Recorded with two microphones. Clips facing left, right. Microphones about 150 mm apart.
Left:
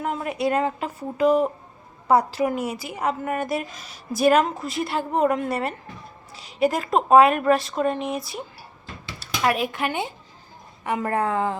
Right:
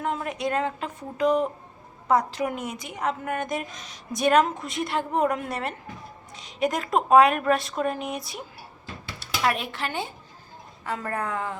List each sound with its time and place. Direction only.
0.0 s a woman's voice: 5° left (ahead or behind); by 11.5 s 30° left (ahead or behind)